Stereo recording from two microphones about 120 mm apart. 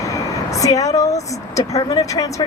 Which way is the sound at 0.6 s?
30° left (ahead or behind).